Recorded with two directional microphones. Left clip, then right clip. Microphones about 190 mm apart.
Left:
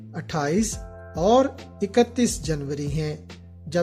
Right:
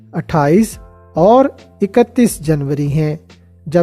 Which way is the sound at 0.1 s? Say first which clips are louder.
Right 12 dB; 45° right (ahead or behind).